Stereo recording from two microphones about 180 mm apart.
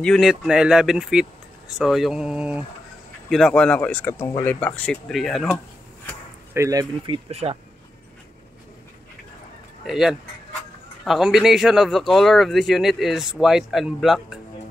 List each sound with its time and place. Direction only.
0.0 s speech: centre (ahead or behind)
6.5 s speech: 15° right (ahead or behind)
7.2 s speech: 35° right (ahead or behind)
9.8 s speech: centre (ahead or behind)